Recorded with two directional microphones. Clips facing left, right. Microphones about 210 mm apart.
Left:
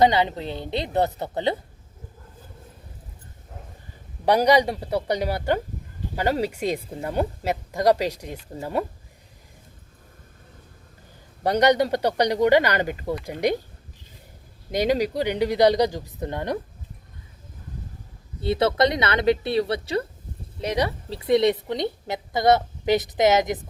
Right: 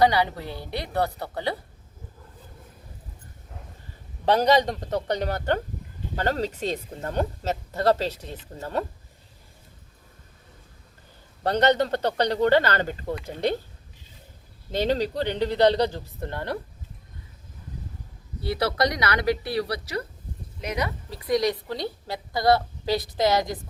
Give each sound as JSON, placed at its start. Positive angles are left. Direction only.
{"t": 0.0, "sound": "a woman's voice", "side_deg": 20}
{"t": 4.3, "sound": "speech", "side_deg": 15}
{"t": 11.4, "sound": "speech", "side_deg": 15}
{"t": 14.7, "sound": "speech", "side_deg": 15}
{"t": 18.3, "sound": "a woman's voice", "side_deg": 25}